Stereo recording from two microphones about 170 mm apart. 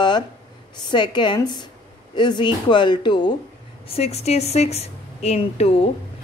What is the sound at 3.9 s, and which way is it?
A woman's voice, 40° left (ahead or behind).